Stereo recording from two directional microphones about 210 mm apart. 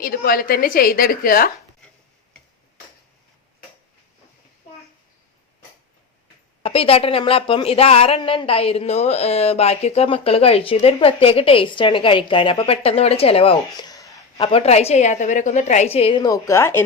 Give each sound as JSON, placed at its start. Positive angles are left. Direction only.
{"t": 0.0, "sound": "a woman's voice", "side_deg": 45}
{"t": 6.6, "sound": "speech", "side_deg": 25}